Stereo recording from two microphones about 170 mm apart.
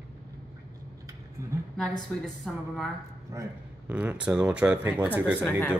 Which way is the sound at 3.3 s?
15° right (ahead or behind).